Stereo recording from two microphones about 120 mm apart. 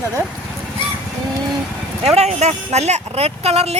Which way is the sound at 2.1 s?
65° right (ahead or behind).